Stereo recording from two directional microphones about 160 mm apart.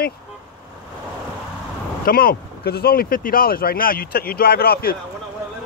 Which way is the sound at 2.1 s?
65° left (ahead or behind).